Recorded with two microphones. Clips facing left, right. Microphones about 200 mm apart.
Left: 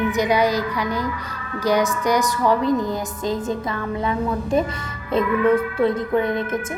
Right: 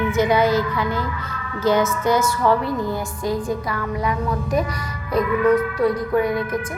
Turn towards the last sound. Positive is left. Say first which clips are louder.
# right 1 dB
turn(degrees=25)  # may be behind; listen again after turning